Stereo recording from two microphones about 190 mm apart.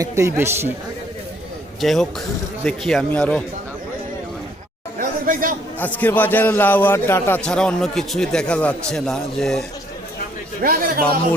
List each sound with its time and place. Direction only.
0.0 s speech: 15° right (ahead or behind)
1.8 s a man's voice: centre (ahead or behind)
4.9 s chatter: 45° right (ahead or behind)
6.0 s a man's voice: 10° left (ahead or behind)
10.6 s a man's voice: 50° right (ahead or behind)